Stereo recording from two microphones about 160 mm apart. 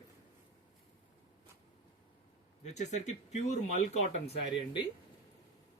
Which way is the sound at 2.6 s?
45° left (ahead or behind).